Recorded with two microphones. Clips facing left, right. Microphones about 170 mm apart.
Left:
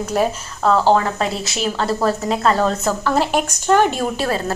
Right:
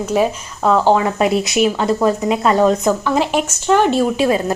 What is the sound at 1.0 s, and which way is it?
A woman's voice, 15° right (ahead or behind).